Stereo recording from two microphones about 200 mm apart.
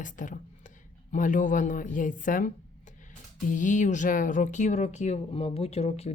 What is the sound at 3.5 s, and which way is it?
Speech, 40° left (ahead or behind).